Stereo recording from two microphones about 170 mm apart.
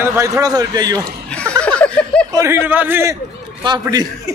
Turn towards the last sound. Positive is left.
turn(degrees=-20)  # may be behind; listen again after turning